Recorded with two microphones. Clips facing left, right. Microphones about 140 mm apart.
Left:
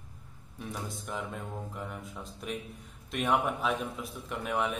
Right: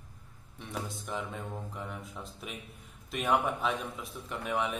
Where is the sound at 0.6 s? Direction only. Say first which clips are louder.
Even; centre (ahead or behind).